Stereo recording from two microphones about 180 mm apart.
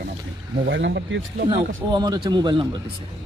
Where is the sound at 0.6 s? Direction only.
85° right; by 1.5 s 70° right (ahead or behind).